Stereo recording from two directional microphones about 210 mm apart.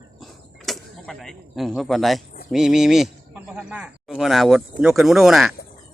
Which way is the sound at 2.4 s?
Centre (ahead or behind).